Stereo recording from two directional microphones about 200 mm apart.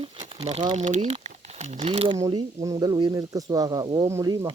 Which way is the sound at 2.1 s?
20° right (ahead or behind).